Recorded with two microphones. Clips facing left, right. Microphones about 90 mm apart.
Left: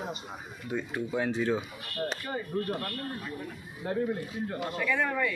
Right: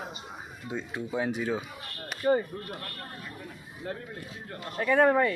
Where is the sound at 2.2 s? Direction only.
35° right (ahead or behind).